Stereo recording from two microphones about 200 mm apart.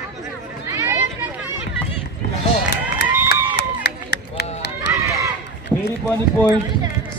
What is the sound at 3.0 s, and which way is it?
Run, 55° left (ahead or behind).